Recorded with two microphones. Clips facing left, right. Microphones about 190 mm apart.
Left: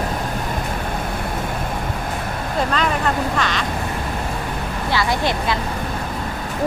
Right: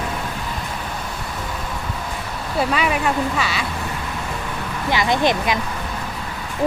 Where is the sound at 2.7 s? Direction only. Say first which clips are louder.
Right 1 dB; 10° right (ahead or behind).